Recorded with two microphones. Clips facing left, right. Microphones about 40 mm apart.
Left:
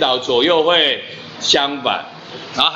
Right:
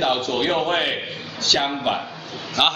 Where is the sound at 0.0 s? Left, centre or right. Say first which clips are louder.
Left 6 dB; left.